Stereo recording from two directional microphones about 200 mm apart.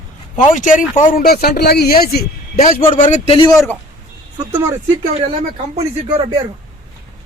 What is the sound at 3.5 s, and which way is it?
Speech, 10° left (ahead or behind).